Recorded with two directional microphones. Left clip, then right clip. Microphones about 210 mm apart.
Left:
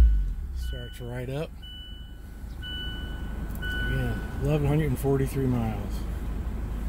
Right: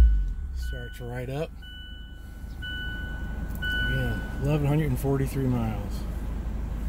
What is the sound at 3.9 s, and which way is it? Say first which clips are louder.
Vehicle: right 2 dB; 40° right (ahead or behind).